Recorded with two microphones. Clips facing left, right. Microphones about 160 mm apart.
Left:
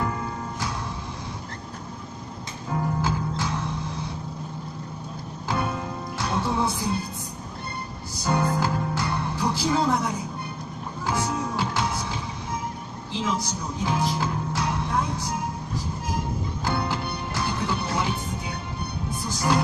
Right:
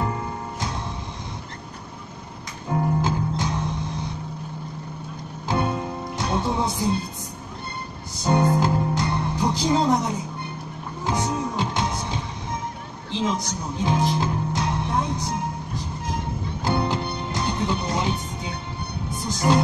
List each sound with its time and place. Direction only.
3.0 s music: 20° right (ahead or behind)
5.5 s music: 25° right (ahead or behind)
8.2 s music: 20° right (ahead or behind)